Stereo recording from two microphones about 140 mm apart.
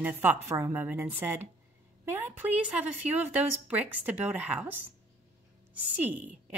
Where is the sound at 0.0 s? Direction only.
15° right (ahead or behind).